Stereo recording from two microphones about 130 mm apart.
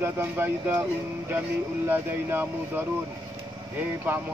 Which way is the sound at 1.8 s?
15° right (ahead or behind).